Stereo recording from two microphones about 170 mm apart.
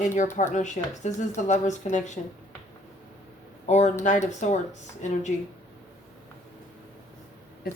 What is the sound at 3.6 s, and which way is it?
Speech, 45° left (ahead or behind).